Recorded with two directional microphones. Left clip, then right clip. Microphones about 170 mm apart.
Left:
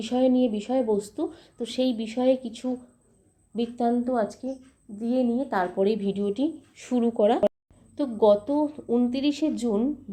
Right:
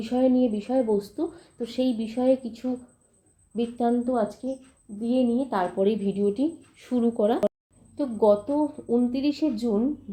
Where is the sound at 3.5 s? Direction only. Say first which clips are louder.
Even; 25° left (ahead or behind).